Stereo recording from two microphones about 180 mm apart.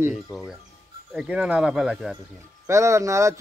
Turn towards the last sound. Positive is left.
turn(degrees=-15)  # may be behind; listen again after turning